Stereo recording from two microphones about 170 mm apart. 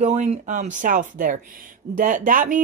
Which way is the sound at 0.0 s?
40° right (ahead or behind).